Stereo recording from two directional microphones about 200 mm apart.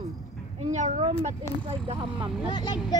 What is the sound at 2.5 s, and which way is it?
Speech, 20° left (ahead or behind).